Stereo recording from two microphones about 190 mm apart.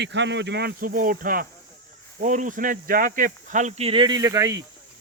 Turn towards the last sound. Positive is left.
turn(degrees=-15)  # may be behind; listen again after turning